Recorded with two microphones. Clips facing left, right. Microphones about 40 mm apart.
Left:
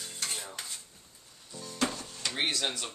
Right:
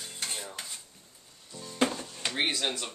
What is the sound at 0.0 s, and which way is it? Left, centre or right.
Cutlery, centre.